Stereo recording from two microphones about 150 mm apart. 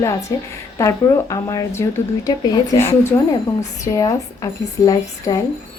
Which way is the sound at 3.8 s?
20° left (ahead or behind).